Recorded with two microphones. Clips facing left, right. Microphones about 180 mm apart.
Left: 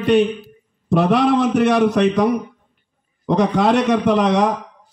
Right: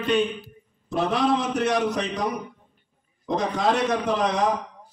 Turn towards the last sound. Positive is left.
turn(degrees=70)  # may be behind; listen again after turning